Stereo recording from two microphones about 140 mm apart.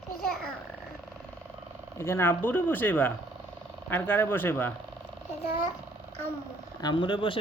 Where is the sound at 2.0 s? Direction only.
20° left (ahead or behind).